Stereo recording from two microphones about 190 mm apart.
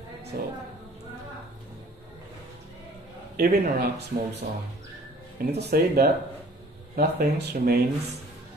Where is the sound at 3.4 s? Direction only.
55° right (ahead or behind).